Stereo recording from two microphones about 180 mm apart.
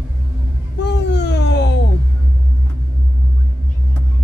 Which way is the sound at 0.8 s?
70° left (ahead or behind).